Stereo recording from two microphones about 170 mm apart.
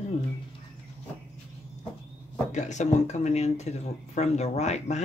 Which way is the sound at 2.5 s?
45° left (ahead or behind).